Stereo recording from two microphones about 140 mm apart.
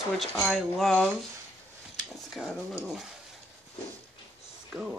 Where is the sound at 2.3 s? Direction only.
5° left (ahead or behind).